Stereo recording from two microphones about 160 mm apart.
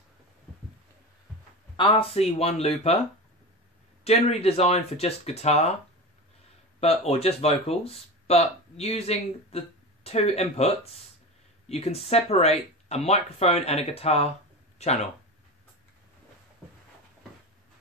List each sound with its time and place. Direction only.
1.8 s speech: 35° left (ahead or behind)
4.0 s speech: 40° left (ahead or behind)
6.8 s speech: 40° left (ahead or behind)